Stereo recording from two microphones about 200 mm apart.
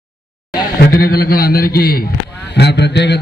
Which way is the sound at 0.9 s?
50° left (ahead or behind).